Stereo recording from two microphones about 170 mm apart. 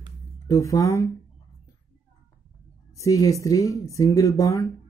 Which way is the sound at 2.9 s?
20° left (ahead or behind).